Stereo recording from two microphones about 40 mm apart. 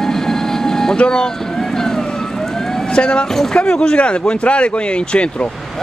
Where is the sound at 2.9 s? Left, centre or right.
Left.